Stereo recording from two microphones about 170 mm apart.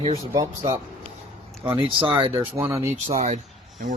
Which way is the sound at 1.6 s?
30° right (ahead or behind).